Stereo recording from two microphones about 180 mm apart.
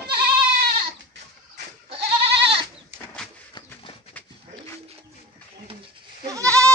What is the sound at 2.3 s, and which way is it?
Goat, 70° right (ahead or behind).